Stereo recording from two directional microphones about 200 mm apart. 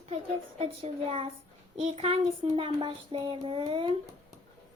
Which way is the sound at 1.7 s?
30° right (ahead or behind).